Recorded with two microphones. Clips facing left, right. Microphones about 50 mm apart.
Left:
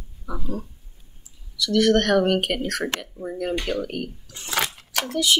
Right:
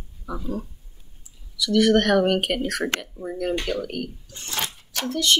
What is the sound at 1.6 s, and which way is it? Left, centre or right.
Speech, centre.